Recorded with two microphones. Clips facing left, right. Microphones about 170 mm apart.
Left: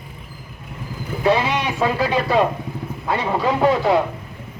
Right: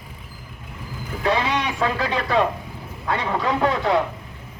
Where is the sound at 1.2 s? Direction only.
20° left (ahead or behind).